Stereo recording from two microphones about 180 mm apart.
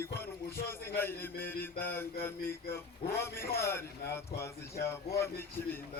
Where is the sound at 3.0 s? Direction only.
30° left (ahead or behind).